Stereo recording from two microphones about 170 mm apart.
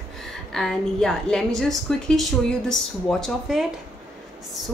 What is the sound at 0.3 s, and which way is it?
A woman's voice, centre (ahead or behind).